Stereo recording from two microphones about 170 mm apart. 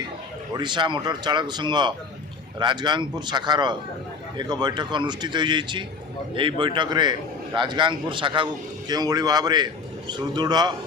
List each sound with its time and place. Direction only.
0.5 s a man's voice: 25° right (ahead or behind)